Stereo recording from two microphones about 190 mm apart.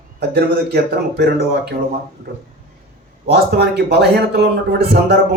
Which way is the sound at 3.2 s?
60° right (ahead or behind).